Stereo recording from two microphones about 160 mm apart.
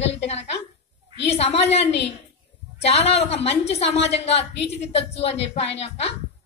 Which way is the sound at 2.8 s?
40° left (ahead or behind).